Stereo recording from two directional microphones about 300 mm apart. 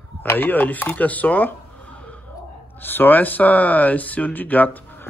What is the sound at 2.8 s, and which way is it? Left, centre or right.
Speech, centre.